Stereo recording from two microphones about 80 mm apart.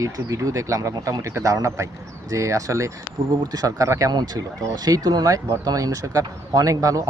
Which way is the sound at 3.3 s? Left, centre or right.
Right.